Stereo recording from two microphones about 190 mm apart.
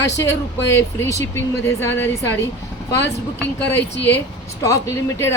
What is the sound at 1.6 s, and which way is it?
Speech, 15° left (ahead or behind).